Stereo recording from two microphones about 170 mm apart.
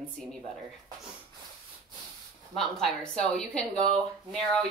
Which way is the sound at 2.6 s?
5° left (ahead or behind).